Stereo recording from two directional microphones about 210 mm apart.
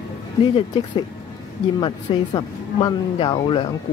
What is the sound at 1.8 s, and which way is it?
A woman's voice, 20° left (ahead or behind).